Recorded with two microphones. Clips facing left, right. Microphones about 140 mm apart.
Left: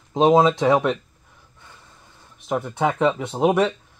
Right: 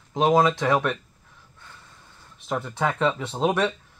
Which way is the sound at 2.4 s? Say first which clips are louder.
Left 4 dB; 15° left (ahead or behind).